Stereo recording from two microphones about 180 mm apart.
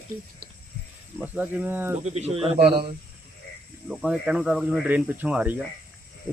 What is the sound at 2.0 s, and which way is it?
Speech, 35° right (ahead or behind).